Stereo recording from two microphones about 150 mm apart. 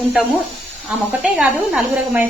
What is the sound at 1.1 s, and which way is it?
Speech, 10° right (ahead or behind).